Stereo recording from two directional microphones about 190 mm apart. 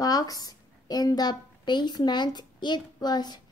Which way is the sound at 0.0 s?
20° left (ahead or behind).